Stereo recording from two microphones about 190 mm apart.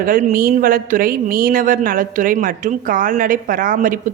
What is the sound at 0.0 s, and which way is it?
A woman's voice, 45° right (ahead or behind).